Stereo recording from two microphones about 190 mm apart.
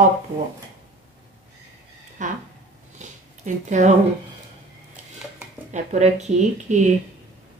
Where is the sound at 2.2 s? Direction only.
40° right (ahead or behind).